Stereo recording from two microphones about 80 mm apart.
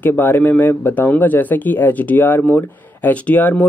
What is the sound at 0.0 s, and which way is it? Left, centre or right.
Speech, left.